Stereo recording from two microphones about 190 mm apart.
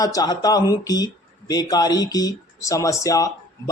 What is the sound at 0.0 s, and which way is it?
Speech, 20° left (ahead or behind).